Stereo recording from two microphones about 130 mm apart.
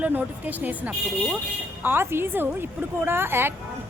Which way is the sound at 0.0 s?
10° right (ahead or behind).